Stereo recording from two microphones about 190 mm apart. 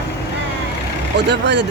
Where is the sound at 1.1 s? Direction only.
65° right (ahead or behind).